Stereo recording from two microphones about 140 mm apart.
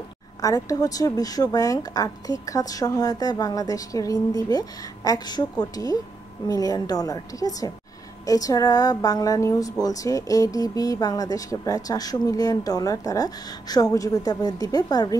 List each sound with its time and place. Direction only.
0.4 s speech: 25° left (ahead or behind)